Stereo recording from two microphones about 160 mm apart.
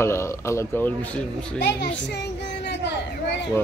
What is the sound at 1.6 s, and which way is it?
Speech, 90° left.